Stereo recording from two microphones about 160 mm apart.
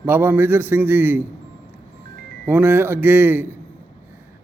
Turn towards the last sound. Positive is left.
turn(degrees=-10)  # may be behind; listen again after turning